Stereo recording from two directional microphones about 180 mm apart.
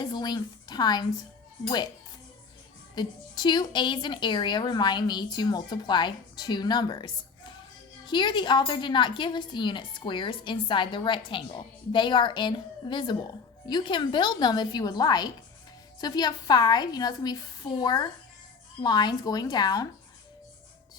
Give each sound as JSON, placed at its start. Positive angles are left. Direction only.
{"t": 0.0, "sound": "a woman's voice", "side_deg": 25}
{"t": 2.9, "sound": "a woman's voice", "side_deg": 25}